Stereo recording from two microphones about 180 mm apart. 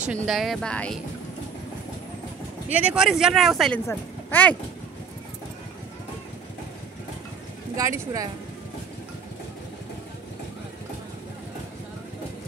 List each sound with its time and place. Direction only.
0.3 s speech: centre (ahead or behind)
2.7 s speech: 5° right (ahead or behind)
7.7 s speech: 20° right (ahead or behind)